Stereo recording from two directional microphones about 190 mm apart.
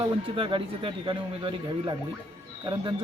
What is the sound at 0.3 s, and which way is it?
Speech, 25° right (ahead or behind).